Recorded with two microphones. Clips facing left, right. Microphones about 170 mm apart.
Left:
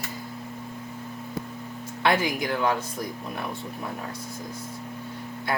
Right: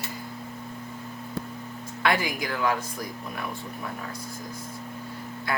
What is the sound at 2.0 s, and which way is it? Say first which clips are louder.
Music: left 2 dB; 25° left (ahead or behind).